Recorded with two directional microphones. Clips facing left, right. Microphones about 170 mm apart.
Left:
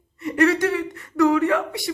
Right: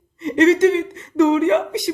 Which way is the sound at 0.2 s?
20° right (ahead or behind).